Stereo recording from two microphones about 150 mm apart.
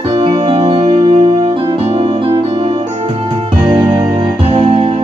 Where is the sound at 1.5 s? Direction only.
25° right (ahead or behind).